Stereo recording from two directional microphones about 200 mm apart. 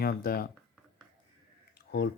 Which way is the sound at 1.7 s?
50° left (ahead or behind).